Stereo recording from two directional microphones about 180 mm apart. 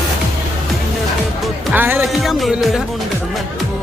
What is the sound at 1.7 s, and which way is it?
Speech, 10° right (ahead or behind).